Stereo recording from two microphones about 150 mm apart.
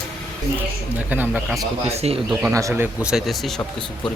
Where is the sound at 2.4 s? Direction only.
15° right (ahead or behind).